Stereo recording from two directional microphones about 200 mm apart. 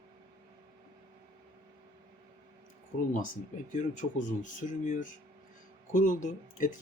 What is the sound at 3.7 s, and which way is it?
Speech, 40° left (ahead or behind).